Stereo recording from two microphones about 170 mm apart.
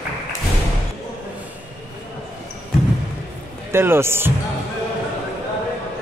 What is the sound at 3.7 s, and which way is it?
Speech, 15° right (ahead or behind).